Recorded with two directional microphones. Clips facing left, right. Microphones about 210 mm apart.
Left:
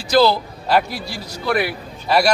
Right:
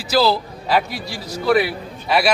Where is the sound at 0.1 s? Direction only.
5° right (ahead or behind).